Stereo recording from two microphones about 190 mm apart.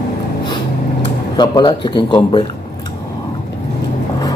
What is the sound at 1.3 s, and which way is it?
Speech, 25° left (ahead or behind).